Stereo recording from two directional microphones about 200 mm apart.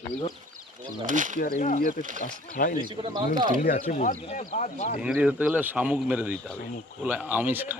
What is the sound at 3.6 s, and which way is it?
Speech, 40° left (ahead or behind).